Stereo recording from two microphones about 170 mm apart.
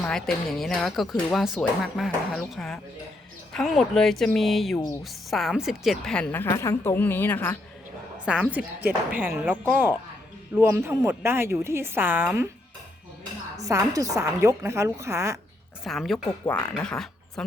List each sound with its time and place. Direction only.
0.0 s a woman's voice: 5° left (ahead or behind)
8.4 s a woman's voice: 10° right (ahead or behind)
13.6 s a woman's voice: 20° right (ahead or behind)
15.8 s a woman's voice: centre (ahead or behind)
16.1 s speech: 10° left (ahead or behind)